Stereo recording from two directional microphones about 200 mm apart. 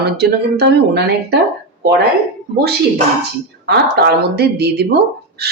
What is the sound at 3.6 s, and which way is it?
Speech, 55° right (ahead or behind).